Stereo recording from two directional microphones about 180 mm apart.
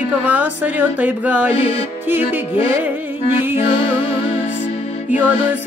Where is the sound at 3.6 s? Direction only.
30° left (ahead or behind).